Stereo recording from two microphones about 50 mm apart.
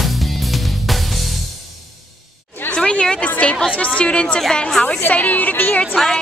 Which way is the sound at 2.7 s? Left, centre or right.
Centre.